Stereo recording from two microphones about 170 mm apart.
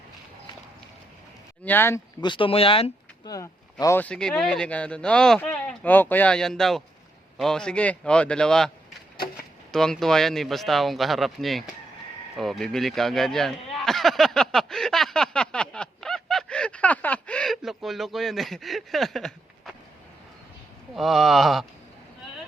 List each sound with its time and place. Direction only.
1.6 s speech: 10° left (ahead or behind)
2.2 s speech: 30° left (ahead or behind)
3.2 s speech: 20° left (ahead or behind); by 8.7 s 5° left (ahead or behind)
9.7 s speech: centre (ahead or behind)
12.4 s a sound: centre (ahead or behind)
20.9 s speech: centre (ahead or behind)